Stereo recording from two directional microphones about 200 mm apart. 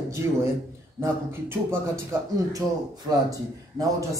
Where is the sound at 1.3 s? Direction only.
10° right (ahead or behind).